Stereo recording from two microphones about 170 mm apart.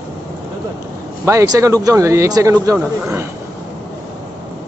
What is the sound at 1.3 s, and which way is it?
Speech, 20° right (ahead or behind).